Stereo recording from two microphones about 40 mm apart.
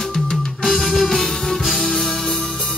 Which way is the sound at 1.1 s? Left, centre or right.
Centre.